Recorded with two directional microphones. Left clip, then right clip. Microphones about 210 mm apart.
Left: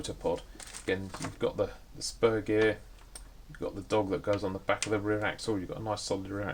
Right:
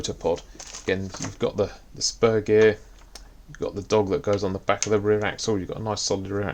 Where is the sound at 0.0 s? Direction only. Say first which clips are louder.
Right 7 dB; 40° right (ahead or behind).